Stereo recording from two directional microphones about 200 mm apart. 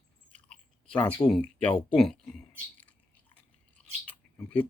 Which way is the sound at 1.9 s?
Centre (ahead or behind).